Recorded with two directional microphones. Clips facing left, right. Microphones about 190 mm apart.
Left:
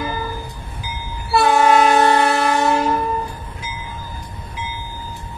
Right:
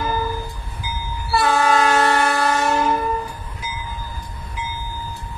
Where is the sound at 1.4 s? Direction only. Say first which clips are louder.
Left 4 dB; 20° left (ahead or behind).